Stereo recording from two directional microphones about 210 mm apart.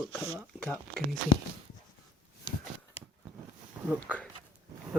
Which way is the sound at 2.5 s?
20° left (ahead or behind).